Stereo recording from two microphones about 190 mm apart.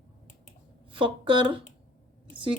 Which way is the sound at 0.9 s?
25° right (ahead or behind).